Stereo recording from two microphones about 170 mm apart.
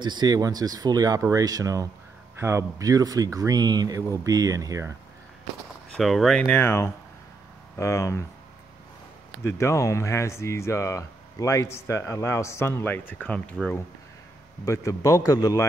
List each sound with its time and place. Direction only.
0.0 s speech: 25° right (ahead or behind)
5.9 s speech: centre (ahead or behind); by 8.2 s 15° left (ahead or behind)
9.4 s speech: 15° left (ahead or behind)
14.6 s a man's voice: 20° left (ahead or behind)